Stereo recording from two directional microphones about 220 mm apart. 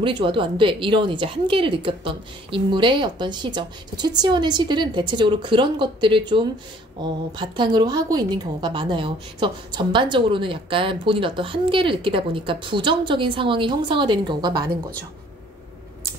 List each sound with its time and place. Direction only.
0.0 s a woman's voice: 20° right (ahead or behind)